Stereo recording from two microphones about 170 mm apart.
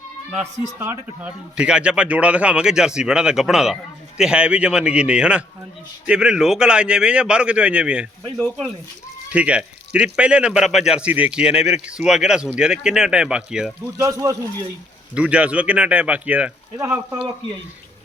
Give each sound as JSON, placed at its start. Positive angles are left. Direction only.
{"t": 0.8, "sound": "speech", "side_deg": -10}
{"t": 14.0, "sound": "a man's voice", "side_deg": -20}
{"t": 15.1, "sound": "speech", "side_deg": -5}